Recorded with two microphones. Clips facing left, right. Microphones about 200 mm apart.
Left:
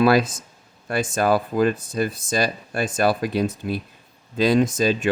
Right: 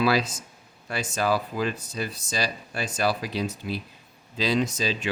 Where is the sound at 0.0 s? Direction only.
50° left (ahead or behind).